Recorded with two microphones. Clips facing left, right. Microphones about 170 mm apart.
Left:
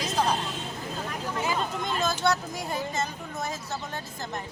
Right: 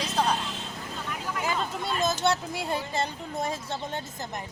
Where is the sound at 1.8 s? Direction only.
20° right (ahead or behind).